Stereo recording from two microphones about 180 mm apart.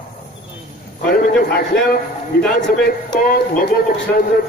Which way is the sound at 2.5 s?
70° left (ahead or behind).